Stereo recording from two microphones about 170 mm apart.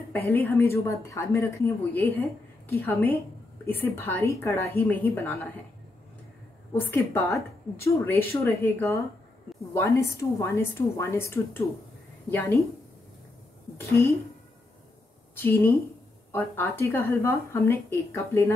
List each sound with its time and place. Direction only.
0.1 s a woman's voice: 10° left (ahead or behind)
6.7 s a woman's voice: 15° left (ahead or behind)
15.3 s a woman's voice: 15° left (ahead or behind)